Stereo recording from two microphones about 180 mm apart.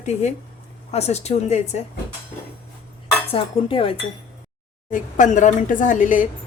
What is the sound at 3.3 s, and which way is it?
Speech, 30° left (ahead or behind).